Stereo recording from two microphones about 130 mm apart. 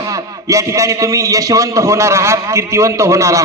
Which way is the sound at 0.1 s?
25° right (ahead or behind).